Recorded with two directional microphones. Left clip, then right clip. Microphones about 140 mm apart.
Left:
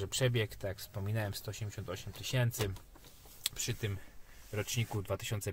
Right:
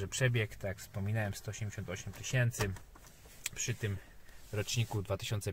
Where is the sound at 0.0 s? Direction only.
20° left (ahead or behind).